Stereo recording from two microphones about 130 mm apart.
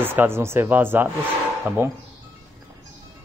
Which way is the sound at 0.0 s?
15° right (ahead or behind).